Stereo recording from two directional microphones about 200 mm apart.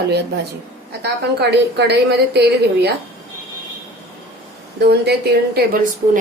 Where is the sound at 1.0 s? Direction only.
55° right (ahead or behind).